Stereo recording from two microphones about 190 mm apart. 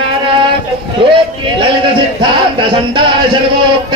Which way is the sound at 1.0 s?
25° right (ahead or behind).